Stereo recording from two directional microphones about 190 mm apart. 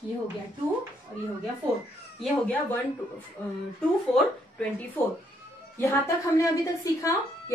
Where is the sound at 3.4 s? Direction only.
10° left (ahead or behind).